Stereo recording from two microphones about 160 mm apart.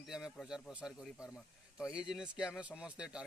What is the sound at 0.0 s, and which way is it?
Speech, centre (ahead or behind).